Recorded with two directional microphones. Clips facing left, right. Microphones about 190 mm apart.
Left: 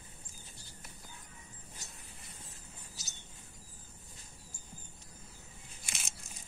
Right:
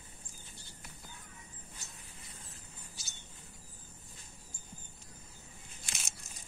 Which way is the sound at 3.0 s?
40° left (ahead or behind).